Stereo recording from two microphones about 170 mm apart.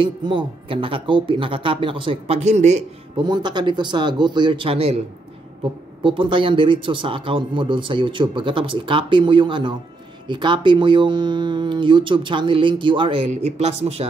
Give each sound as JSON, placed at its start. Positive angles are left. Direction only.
{"t": 0.0, "sound": "speech", "side_deg": -30}
{"t": 3.2, "sound": "speech", "side_deg": -25}
{"t": 6.0, "sound": "speech", "side_deg": -30}